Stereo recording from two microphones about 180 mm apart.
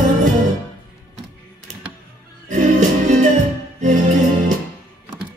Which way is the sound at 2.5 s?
45° right (ahead or behind).